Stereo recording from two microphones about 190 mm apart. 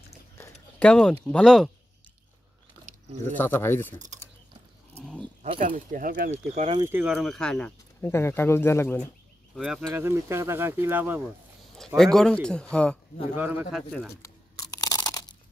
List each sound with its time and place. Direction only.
0.4 s a sound: 5° left (ahead or behind)
1.2 s speech: 5° left (ahead or behind)
2.8 s a sound: 40° right (ahead or behind)
3.3 s speech: 10° left (ahead or behind)
5.4 s speech: 40° right (ahead or behind)
6.3 s speech: 35° right (ahead or behind)
6.8 s speech: 10° right (ahead or behind); by 9.0 s 10° left (ahead or behind)
9.6 s speech: centre (ahead or behind)
12.0 s speech: centre (ahead or behind)
13.4 s speech: 5° right (ahead or behind)
14.2 s crunch: 20° left (ahead or behind)